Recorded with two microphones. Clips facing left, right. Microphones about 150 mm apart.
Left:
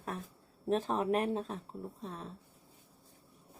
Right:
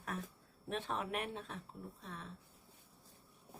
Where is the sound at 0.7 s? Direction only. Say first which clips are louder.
Left 9 dB; 40° left (ahead or behind).